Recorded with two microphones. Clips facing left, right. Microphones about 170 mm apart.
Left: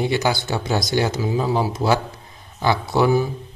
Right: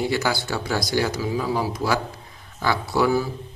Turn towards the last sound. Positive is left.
turn(degrees=20)  # may be behind; listen again after turning